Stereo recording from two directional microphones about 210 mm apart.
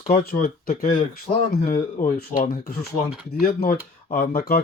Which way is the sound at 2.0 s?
40° left (ahead or behind).